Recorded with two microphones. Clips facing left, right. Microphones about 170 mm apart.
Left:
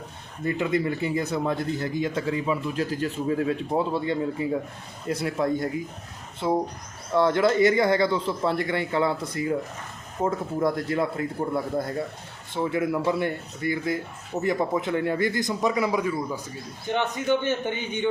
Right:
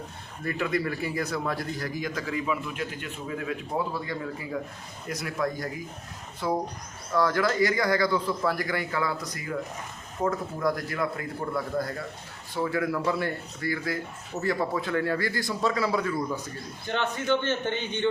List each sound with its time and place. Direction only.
0.4 s a man's voice: 20° left (ahead or behind)